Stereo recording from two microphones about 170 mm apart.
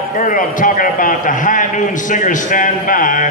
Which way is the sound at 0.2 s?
50° left (ahead or behind).